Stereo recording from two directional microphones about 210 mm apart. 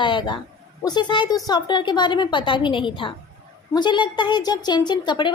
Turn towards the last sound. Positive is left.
turn(degrees=20)  # may be behind; listen again after turning